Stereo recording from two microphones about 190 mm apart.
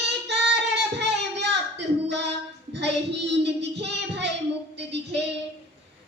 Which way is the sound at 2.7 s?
65° right (ahead or behind).